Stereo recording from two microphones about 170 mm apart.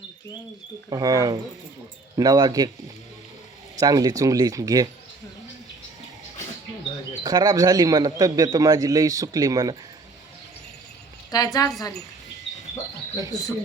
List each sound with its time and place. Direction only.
0.9 s a man's voice: 20° right (ahead or behind)
3.8 s a man's voice: 20° right (ahead or behind)
7.2 s a man's voice: 20° right (ahead or behind)
11.3 s a woman's voice: 20° left (ahead or behind)
13.3 s a woman's voice: 20° left (ahead or behind)